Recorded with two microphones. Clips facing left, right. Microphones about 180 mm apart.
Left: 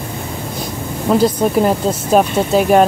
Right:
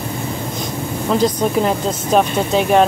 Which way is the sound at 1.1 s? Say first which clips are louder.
Left 3 dB; 5° left (ahead or behind).